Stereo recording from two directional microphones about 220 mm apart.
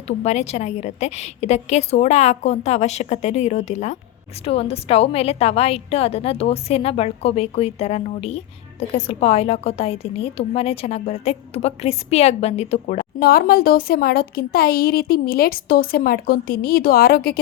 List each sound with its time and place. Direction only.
0.2 s a woman's voice: 30° left (ahead or behind)
13.1 s speech: 40° left (ahead or behind)